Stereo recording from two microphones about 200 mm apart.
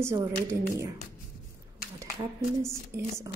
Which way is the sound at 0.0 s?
15° right (ahead or behind).